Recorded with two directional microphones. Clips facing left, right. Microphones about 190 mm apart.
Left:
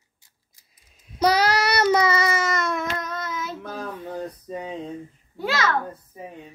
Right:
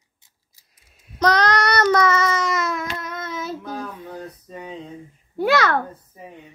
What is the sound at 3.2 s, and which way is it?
Child singing, 25° right (ahead or behind).